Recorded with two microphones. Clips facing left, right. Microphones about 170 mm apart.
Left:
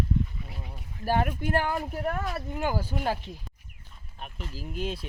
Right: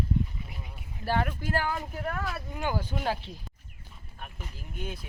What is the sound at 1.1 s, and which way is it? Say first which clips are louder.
Speech: left 2 dB; 15° left (ahead or behind).